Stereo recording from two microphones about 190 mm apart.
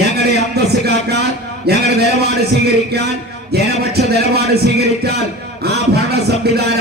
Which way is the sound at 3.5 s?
55° right (ahead or behind).